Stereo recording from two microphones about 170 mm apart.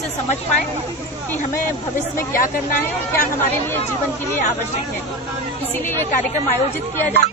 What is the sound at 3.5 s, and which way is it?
Speech, 15° left (ahead or behind).